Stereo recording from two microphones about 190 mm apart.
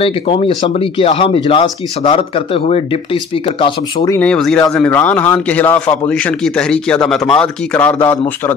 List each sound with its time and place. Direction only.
0.0 s speech: 30° left (ahead or behind)
4.1 s a man's voice: 5° left (ahead or behind)